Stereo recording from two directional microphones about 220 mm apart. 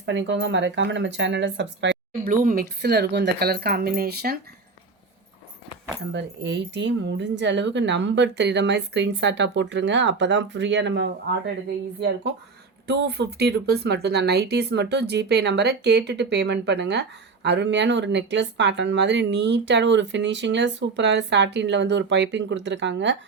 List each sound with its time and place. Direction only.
0.0 s speech: 55° right (ahead or behind)
6.1 s speech: 50° right (ahead or behind)
12.9 s speech: 50° right (ahead or behind)